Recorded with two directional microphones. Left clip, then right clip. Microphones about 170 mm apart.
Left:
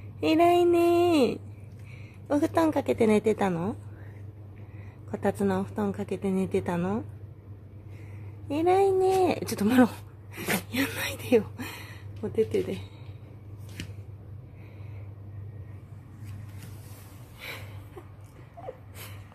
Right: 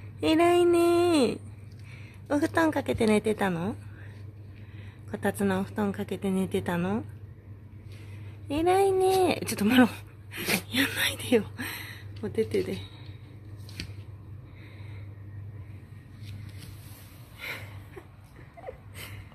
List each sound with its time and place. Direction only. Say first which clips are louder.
0.2 s a woman's voice: left 1 dB; 5° left (ahead or behind)
5.1 s a woman's voice: left 2 dB; 10° left (ahead or behind)
5.4 s a woman's voice: left 1 dB; 10° right (ahead or behind)
5.9 s a woman's voice: left 1 dB; 10° left (ahead or behind)
8.5 s speech: left 1 dB; 10° left (ahead or behind)
17.4 s a sound: right 3 dB; centre (ahead or behind)